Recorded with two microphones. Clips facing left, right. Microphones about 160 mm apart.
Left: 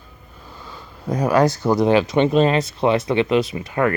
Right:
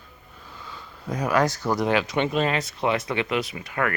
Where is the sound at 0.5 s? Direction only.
35° left (ahead or behind).